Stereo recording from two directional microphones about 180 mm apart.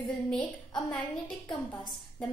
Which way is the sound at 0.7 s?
5° left (ahead or behind).